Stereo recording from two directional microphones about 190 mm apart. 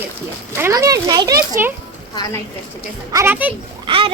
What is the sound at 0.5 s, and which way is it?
Speech, 15° right (ahead or behind).